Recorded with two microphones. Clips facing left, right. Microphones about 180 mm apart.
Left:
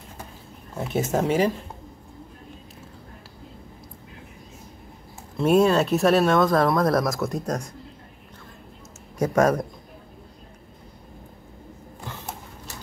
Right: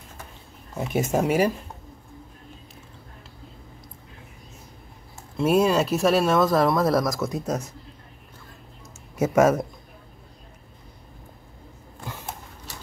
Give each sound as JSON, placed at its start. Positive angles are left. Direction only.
{"t": 0.7, "sound": "speech", "side_deg": -10}
{"t": 5.4, "sound": "speech", "side_deg": 0}
{"t": 9.2, "sound": "speech", "side_deg": -5}